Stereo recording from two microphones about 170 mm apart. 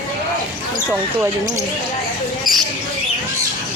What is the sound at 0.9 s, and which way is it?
Speech, 10° right (ahead or behind).